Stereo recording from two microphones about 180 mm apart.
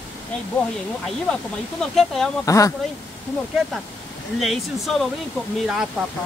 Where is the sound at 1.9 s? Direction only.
Centre (ahead or behind).